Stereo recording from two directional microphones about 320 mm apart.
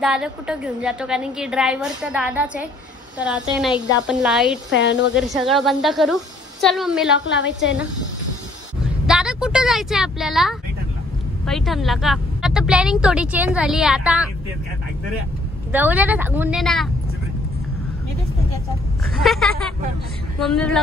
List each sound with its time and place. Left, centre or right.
0.0 s a woman's voice: centre
4.6 s a woman's voice: left
5.1 s a woman's voice: centre
7.2 s a woman's voice: left
9.0 s a woman's voice: centre
15.7 s a woman's voice: centre
19.1 s a woman's voice: centre